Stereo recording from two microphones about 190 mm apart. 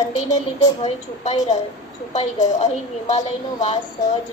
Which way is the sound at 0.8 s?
35° left (ahead or behind).